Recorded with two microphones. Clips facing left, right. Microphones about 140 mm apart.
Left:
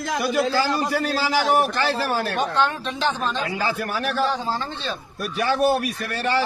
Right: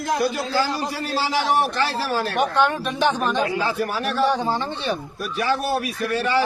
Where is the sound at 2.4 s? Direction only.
15° right (ahead or behind).